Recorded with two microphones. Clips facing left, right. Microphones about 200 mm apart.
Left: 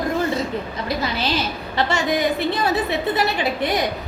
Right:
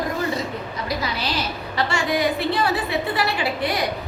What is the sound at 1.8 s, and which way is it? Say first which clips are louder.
A woman's voice: left 2 dB; 20° left (ahead or behind).